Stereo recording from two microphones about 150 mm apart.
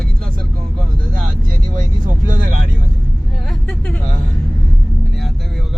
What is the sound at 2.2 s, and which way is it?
Vehicle, 60° right (ahead or behind).